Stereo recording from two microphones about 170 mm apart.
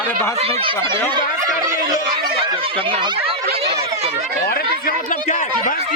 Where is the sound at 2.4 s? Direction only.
30° right (ahead or behind).